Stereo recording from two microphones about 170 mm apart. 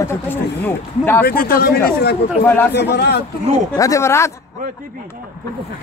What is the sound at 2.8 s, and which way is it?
Speech, 75° left (ahead or behind).